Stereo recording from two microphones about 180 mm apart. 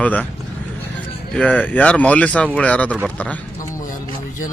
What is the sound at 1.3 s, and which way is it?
Speech, 5° left (ahead or behind).